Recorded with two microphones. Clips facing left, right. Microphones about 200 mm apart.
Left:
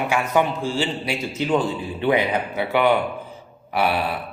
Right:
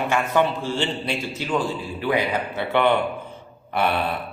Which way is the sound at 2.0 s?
25° left (ahead or behind).